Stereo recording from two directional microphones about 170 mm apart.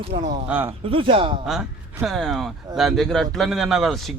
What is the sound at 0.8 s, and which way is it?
Speech, 30° right (ahead or behind).